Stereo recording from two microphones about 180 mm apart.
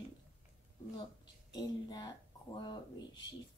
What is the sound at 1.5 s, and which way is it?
Speech, 20° left (ahead or behind).